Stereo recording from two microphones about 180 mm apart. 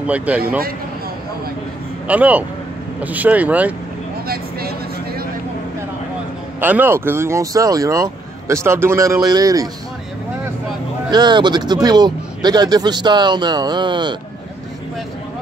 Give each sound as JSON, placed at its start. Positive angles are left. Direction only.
{"t": 0.0, "sound": "speech", "side_deg": -10}
{"t": 2.0, "sound": "speech", "side_deg": -10}
{"t": 4.3, "sound": "vehicle", "side_deg": -55}
{"t": 6.6, "sound": "speech", "side_deg": -10}
{"t": 11.1, "sound": "speech", "side_deg": -25}